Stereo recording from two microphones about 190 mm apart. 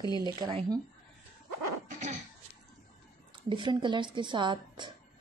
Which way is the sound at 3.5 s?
25° right (ahead or behind).